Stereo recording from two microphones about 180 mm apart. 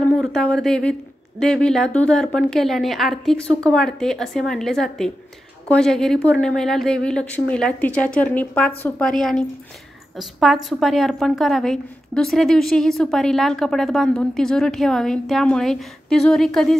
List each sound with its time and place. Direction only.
0.1 s a woman's voice: centre (ahead or behind)